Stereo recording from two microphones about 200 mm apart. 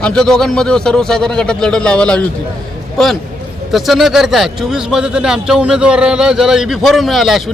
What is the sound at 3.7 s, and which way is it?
A man's voice, centre (ahead or behind).